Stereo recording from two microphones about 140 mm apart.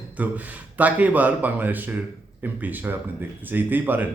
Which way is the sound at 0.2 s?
10° right (ahead or behind).